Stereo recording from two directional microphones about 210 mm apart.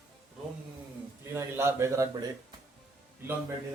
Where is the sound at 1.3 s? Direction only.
10° right (ahead or behind).